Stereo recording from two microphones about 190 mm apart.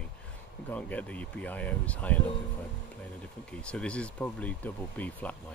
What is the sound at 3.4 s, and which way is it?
Speech, 5° left (ahead or behind).